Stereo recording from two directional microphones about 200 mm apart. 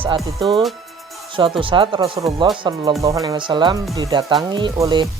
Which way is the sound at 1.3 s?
25° right (ahead or behind).